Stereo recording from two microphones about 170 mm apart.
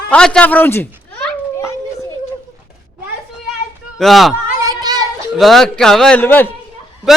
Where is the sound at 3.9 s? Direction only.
Centre (ahead or behind).